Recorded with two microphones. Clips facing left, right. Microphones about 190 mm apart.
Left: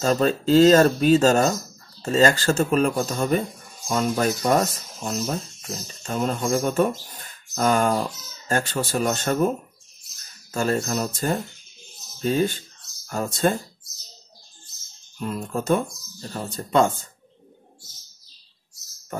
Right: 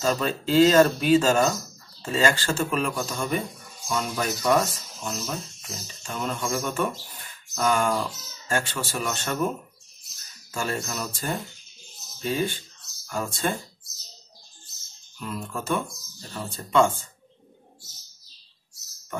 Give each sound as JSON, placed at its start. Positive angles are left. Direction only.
{"t": 0.0, "sound": "speech", "side_deg": 40}
{"t": 10.5, "sound": "speech", "side_deg": 40}
{"t": 15.1, "sound": "speech", "side_deg": 40}